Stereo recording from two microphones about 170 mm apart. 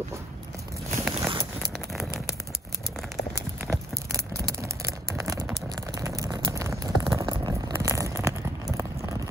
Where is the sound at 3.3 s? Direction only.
15° right (ahead or behind).